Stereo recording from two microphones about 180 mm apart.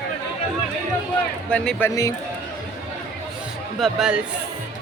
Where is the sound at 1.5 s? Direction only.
10° left (ahead or behind).